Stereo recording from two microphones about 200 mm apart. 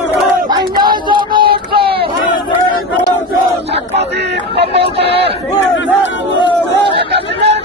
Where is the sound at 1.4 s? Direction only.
50° right (ahead or behind).